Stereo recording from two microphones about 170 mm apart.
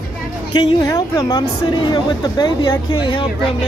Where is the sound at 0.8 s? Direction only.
20° left (ahead or behind).